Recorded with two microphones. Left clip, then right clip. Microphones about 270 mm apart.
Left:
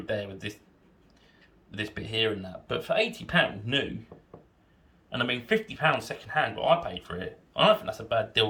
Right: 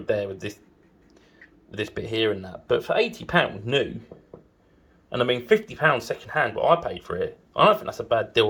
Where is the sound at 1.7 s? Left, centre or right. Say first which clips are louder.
Right 3 dB; right.